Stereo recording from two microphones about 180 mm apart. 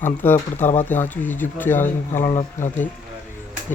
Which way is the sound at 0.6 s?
40° left (ahead or behind).